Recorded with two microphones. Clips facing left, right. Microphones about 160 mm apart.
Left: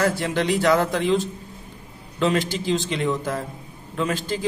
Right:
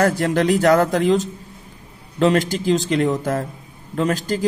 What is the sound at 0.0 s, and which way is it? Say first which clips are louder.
A man's voice: right 5 dB; 45° right (ahead or behind).